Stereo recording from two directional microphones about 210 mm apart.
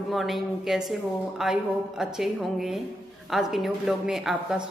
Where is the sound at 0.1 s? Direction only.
Centre (ahead or behind).